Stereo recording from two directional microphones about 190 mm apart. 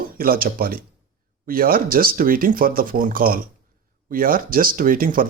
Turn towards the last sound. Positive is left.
turn(degrees=-45)  # may be behind; listen again after turning